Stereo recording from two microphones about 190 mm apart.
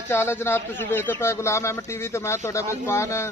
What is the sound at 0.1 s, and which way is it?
Speech, 10° left (ahead or behind).